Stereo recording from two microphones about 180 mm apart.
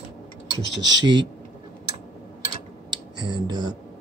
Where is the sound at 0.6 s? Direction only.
85° right.